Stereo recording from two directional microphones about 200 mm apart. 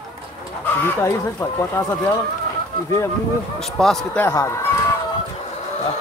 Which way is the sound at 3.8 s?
5° left (ahead or behind).